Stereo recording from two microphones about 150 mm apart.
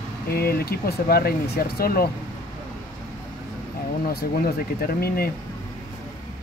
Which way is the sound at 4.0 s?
85° left.